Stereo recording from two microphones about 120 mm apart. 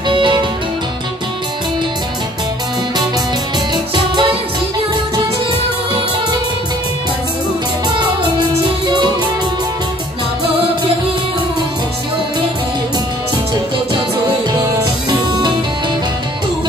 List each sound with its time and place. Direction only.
0.1 s music: 40° right (ahead or behind)
3.7 s music: 40° right (ahead or behind)
14.5 s music: 30° right (ahead or behind)